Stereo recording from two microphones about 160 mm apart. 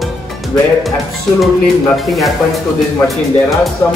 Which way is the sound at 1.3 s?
Centre (ahead or behind).